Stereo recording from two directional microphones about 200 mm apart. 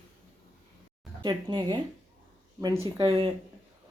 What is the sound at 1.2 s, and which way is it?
Speech, 20° right (ahead or behind).